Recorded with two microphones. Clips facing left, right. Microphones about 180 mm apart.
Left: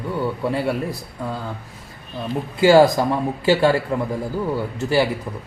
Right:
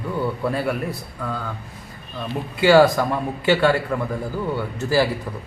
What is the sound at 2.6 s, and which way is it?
Speech, 30° left (ahead or behind).